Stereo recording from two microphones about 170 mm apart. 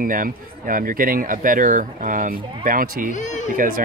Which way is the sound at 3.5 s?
55° right (ahead or behind).